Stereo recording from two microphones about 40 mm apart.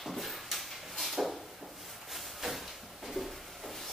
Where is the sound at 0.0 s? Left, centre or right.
Centre.